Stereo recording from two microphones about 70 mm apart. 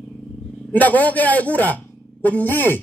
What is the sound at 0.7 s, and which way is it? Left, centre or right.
A man's voice, left.